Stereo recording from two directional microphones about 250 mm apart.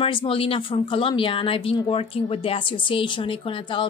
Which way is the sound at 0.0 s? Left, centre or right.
Left.